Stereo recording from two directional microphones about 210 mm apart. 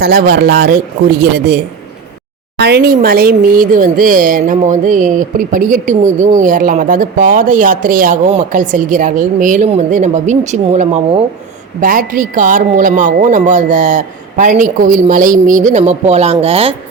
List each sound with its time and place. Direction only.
0.0 s a man's voice: 45° right (ahead or behind)
2.6 s speech: 50° right (ahead or behind); by 16.7 s 30° right (ahead or behind)